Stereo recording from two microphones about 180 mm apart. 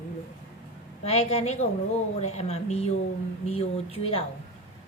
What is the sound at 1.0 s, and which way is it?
A woman's voice, 35° left (ahead or behind).